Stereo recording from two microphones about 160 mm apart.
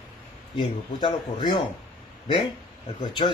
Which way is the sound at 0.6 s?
30° left (ahead or behind).